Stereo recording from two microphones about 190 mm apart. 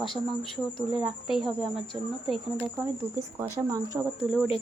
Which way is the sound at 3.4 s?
15° right (ahead or behind).